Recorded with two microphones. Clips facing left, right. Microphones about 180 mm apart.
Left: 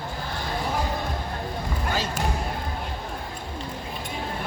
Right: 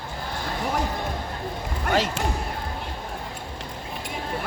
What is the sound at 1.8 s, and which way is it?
Basketball bounce, 75° right (ahead or behind).